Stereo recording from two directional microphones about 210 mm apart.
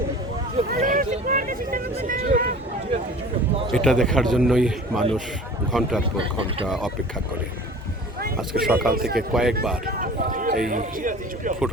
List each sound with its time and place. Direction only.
0.7 s vehicle: 40° right (ahead or behind)
2.0 s a sound: 40° right (ahead or behind)
3.7 s a man's voice: centre (ahead or behind)
8.4 s a man's voice: centre (ahead or behind)
8.9 s speech: 45° right (ahead or behind)
9.3 s a man's voice: centre (ahead or behind)
9.8 s speech: 40° right (ahead or behind)